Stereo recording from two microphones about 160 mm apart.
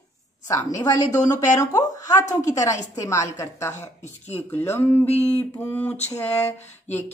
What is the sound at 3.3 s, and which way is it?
Speech, 20° left (ahead or behind).